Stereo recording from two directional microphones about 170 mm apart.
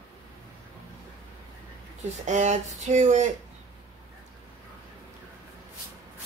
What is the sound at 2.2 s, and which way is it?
Speech, 45° right (ahead or behind).